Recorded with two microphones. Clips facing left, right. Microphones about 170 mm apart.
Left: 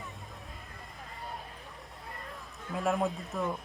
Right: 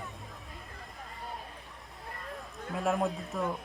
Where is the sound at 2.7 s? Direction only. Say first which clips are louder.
Even; centre (ahead or behind).